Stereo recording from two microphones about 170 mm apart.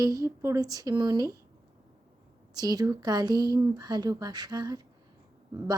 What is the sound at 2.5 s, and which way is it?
A woman's voice, 20° right (ahead or behind).